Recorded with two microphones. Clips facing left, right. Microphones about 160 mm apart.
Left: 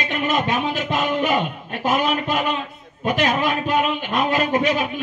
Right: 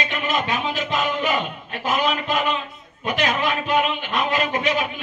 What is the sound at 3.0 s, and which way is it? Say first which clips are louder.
Speech: left 3 dB; 45° left (ahead or behind).